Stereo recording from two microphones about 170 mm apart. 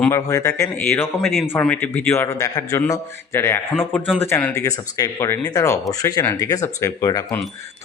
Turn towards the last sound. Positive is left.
turn(degrees=20)  # may be behind; listen again after turning